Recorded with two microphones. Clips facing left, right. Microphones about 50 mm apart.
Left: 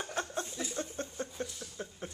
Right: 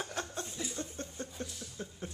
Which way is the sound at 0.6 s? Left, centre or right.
Left.